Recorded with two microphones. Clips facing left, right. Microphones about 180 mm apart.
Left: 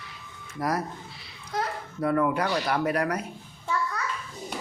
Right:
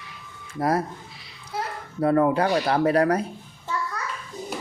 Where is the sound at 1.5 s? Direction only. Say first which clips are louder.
Left 1 dB; 5° right (ahead or behind).